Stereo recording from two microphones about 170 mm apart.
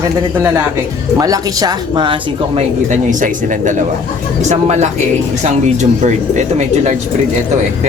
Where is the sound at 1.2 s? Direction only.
20° right (ahead or behind).